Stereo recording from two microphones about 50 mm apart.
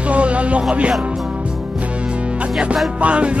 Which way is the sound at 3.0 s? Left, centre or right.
Right.